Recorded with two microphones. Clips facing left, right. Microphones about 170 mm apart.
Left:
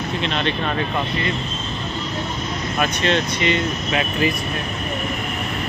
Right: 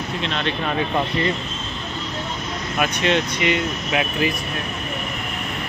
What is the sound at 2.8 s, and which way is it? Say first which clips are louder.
Speech: even; 15° right (ahead or behind).